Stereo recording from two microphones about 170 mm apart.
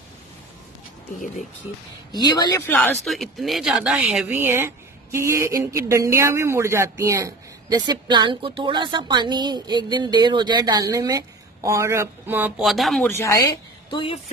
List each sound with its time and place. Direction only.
2.1 s speech: 25° left (ahead or behind)
2.6 s speech: 10° left (ahead or behind)
3.1 s speech: centre (ahead or behind)
13.8 s speech: 30° left (ahead or behind)